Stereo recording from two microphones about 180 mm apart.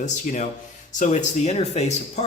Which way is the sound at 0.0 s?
40° left (ahead or behind).